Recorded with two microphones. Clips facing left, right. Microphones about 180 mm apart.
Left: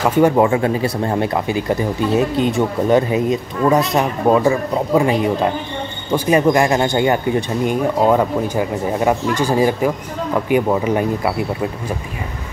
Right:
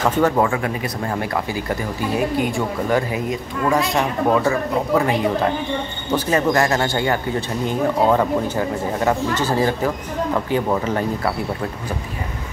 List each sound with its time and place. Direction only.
0.0 s speech: 10° left (ahead or behind)
0.4 s speech: 25° left (ahead or behind)
6.1 s speech: 15° left (ahead or behind)